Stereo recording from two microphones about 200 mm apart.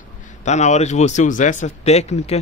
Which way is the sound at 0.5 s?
35° left (ahead or behind).